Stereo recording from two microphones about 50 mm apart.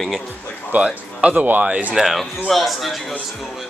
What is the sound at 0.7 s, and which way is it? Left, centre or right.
Speech, right.